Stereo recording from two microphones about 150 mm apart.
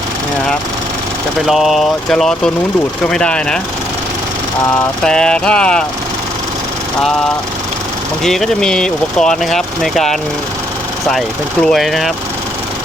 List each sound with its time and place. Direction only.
1.5 s speech: centre (ahead or behind)
5.0 s speech: 5° left (ahead or behind)
8.2 s speech: centre (ahead or behind)
11.6 s speech: centre (ahead or behind)